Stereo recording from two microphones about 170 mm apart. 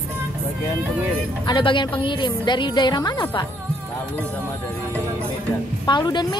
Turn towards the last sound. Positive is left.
turn(degrees=25)  # may be behind; listen again after turning